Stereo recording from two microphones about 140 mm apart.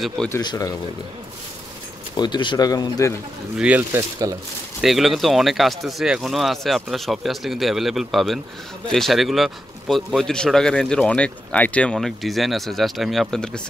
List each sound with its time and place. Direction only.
0.4 s speech: 30° left (ahead or behind)
2.1 s speech: 30° left (ahead or behind)
3.5 s speech: 10° right (ahead or behind)
4.2 s speech: 25° right (ahead or behind)
4.8 s speech: centre (ahead or behind)